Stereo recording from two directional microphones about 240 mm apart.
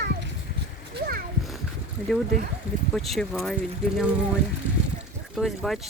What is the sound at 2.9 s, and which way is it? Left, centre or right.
Speech, centre.